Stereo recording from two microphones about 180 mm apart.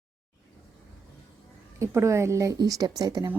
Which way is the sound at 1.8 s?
15° right (ahead or behind).